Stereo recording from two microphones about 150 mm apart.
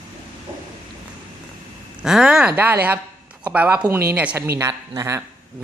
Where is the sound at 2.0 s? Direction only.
5° right (ahead or behind).